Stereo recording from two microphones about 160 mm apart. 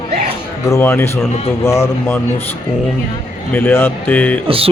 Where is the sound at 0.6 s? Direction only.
15° left (ahead or behind).